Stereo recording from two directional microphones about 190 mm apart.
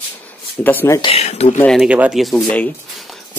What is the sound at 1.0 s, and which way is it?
Speech, 30° left (ahead or behind).